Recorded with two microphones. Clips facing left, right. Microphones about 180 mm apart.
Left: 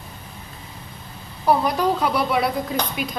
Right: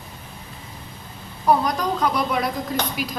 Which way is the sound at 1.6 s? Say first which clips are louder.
Left 2 dB; 5° left (ahead or behind).